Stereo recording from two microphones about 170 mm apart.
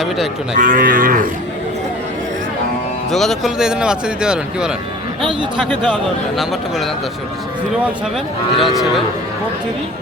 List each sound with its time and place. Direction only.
0.6 s cattle: 55° right (ahead or behind)
3.1 s speech: centre (ahead or behind)
5.2 s speech: 30° right (ahead or behind)
5.5 s speech: centre (ahead or behind)
8.5 s speech: centre (ahead or behind)